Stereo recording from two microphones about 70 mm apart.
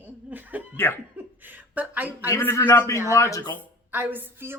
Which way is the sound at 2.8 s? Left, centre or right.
Left.